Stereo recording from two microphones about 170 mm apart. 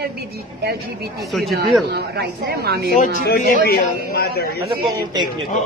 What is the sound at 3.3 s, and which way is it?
A man's voice, 65° left (ahead or behind).